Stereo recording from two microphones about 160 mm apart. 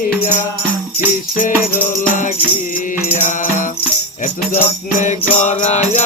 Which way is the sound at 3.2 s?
55° left (ahead or behind).